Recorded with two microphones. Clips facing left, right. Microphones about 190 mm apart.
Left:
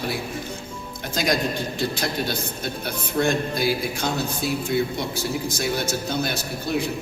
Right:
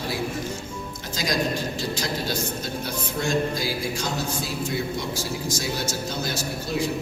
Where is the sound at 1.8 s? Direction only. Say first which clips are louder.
Left 3 dB; 60° left (ahead or behind).